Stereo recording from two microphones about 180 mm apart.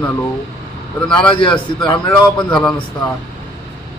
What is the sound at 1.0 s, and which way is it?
A man's voice, 5° left (ahead or behind).